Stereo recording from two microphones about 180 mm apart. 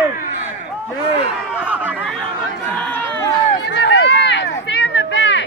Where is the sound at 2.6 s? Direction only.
10° left (ahead or behind).